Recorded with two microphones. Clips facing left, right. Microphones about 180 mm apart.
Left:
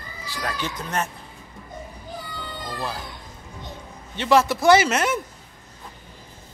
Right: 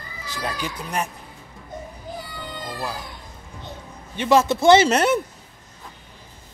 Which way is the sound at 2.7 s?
10° right (ahead or behind).